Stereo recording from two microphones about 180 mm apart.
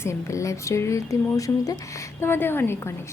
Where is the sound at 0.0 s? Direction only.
15° left (ahead or behind).